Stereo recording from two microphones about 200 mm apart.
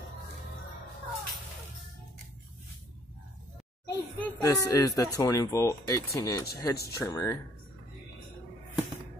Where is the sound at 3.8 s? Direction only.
15° left (ahead or behind).